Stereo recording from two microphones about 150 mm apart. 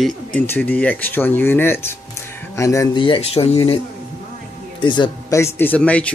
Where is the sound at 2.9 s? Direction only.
35° left (ahead or behind).